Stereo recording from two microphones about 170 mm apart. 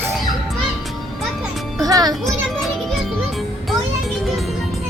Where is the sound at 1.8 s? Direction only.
20° right (ahead or behind).